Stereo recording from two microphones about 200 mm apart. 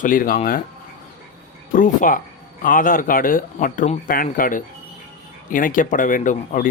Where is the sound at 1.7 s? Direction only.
45° left (ahead or behind).